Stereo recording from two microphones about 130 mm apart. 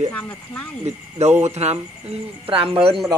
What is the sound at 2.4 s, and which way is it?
Speech, 45° right (ahead or behind).